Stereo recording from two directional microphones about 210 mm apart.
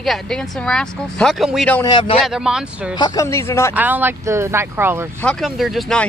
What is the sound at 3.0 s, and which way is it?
Speech, 20° left (ahead or behind).